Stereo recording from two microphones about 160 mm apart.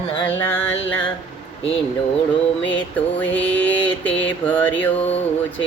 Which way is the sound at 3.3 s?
10° left (ahead or behind).